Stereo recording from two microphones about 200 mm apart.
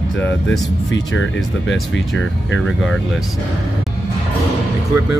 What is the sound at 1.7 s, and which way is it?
Speech, 65° left (ahead or behind).